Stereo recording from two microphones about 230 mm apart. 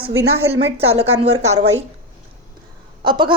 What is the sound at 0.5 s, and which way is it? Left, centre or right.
Speech, right.